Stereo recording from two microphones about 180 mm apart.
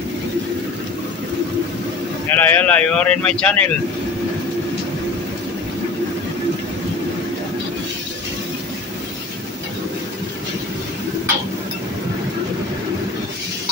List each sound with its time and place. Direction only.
2.3 s speech: 10° left (ahead or behind)